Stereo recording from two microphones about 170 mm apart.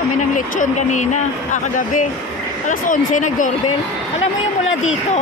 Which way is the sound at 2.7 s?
50° left (ahead or behind).